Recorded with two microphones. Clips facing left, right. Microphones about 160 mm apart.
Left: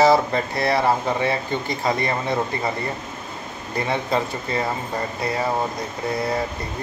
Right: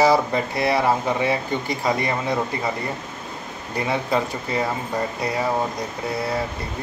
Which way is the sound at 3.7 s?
10° right (ahead or behind).